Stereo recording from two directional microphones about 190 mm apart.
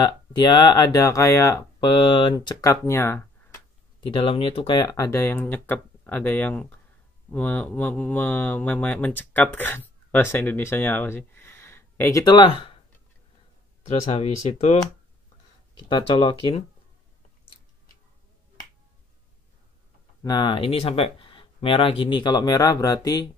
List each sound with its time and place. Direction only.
0.0 s speech: 25° left (ahead or behind)
4.0 s speech: 25° left (ahead or behind)
14.1 s speech: 30° left (ahead or behind)
15.9 s speech: 25° left (ahead or behind)
20.2 s speech: 25° left (ahead or behind)